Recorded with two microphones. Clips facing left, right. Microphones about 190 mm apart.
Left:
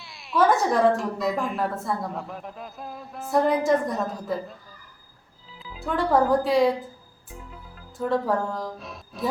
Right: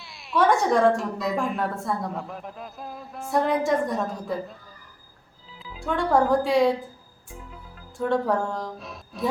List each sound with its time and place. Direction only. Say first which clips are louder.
0.0 s a woman's voice: left 1 dB; centre (ahead or behind)